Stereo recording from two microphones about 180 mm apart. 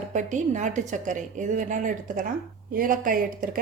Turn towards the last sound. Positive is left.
turn(degrees=-50)  # may be behind; listen again after turning